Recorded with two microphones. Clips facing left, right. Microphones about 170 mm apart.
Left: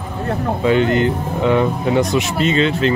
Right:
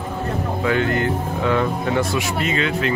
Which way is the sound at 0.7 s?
20° left (ahead or behind).